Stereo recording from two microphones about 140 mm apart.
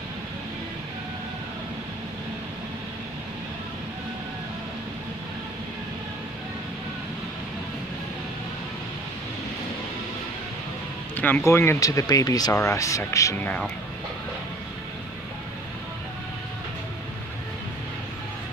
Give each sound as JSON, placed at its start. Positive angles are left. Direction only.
{"t": 11.1, "sound": "speech", "side_deg": 10}